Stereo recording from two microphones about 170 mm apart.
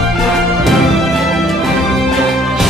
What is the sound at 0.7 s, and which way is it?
Music, centre (ahead or behind).